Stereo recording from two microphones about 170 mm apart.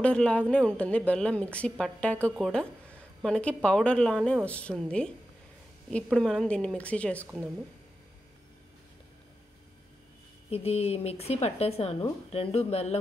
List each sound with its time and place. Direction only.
0.0 s a woman's voice: 5° left (ahead or behind)
10.5 s speech: 35° left (ahead or behind)